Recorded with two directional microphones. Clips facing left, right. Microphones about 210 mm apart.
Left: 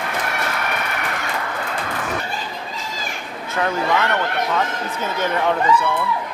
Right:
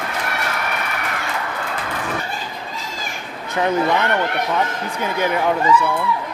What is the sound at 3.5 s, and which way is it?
Speech, 20° right (ahead or behind).